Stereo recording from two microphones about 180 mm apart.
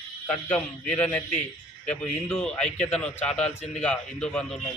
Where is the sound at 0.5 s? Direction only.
5° left (ahead or behind).